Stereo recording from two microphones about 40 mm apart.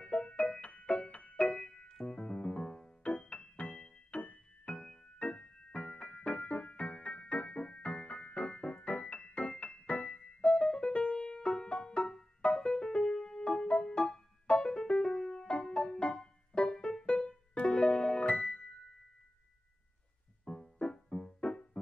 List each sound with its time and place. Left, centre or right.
0.0 s music: left
1.5 s music: left
3.1 s music: left
4.1 s music: left
4.6 s music: centre
20.6 s music: centre